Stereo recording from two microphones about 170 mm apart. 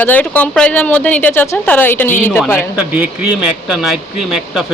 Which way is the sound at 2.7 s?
10° right (ahead or behind).